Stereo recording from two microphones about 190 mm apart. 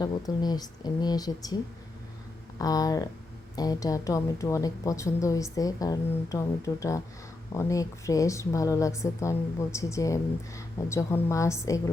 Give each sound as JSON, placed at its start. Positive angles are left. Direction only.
{"t": 0.0, "sound": "speech", "side_deg": 20}
{"t": 2.6, "sound": "a woman's voice", "side_deg": 20}